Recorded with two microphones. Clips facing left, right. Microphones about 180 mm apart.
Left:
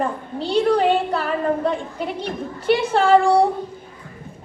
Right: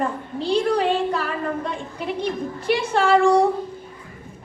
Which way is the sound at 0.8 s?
35° left (ahead or behind).